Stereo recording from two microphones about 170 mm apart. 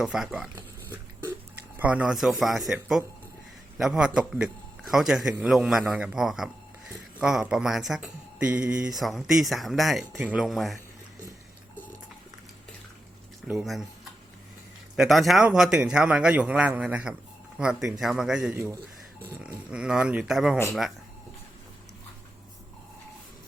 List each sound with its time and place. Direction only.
0.0 s speech: centre (ahead or behind)
0.5 s a sound: 15° right (ahead or behind)
1.7 s speech: 10° right (ahead or behind)
13.5 s speech: 5° right (ahead or behind)
14.9 s speech: centre (ahead or behind)
18.5 s speech: 15° right (ahead or behind)
19.4 s speech: 5° right (ahead or behind)